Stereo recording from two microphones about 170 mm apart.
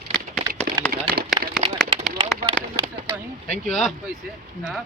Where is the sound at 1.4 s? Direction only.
30° right (ahead or behind).